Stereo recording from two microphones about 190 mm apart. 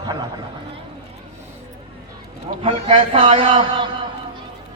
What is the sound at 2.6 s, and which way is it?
A man's voice, 30° right (ahead or behind).